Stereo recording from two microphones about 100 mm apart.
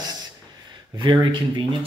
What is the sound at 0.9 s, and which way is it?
Speech, 55° right (ahead or behind).